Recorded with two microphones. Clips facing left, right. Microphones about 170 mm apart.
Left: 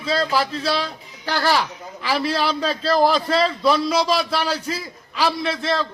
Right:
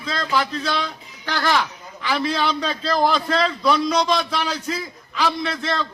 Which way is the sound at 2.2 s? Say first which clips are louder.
Even; 5° left (ahead or behind).